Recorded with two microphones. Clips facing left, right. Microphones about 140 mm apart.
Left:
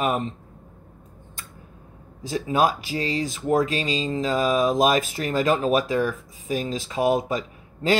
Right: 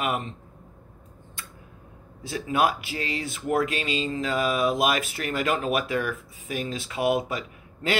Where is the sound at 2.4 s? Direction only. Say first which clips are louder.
Left 2 dB; 35° left (ahead or behind).